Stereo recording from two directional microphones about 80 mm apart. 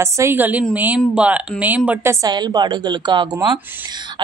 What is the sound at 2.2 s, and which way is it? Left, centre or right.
A woman's voice, right.